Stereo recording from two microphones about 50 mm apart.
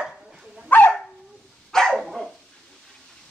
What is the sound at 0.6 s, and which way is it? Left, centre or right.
Dog, left.